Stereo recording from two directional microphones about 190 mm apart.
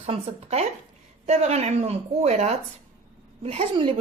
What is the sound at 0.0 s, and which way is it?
A woman's voice, 30° right (ahead or behind).